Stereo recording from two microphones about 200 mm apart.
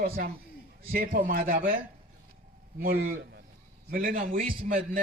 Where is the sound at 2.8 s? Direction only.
45° right (ahead or behind).